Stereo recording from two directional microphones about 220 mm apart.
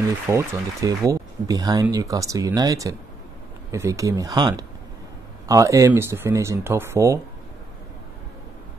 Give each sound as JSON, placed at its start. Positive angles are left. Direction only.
{"t": 0.3, "sound": "speech", "side_deg": -15}